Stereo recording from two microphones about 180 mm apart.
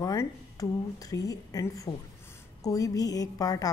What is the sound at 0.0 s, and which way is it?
A woman's voice, 20° left (ahead or behind).